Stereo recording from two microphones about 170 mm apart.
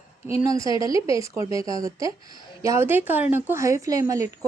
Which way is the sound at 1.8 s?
20° right (ahead or behind).